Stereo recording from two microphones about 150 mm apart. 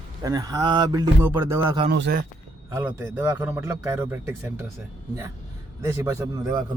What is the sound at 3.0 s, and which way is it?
A man's voice, 15° right (ahead or behind).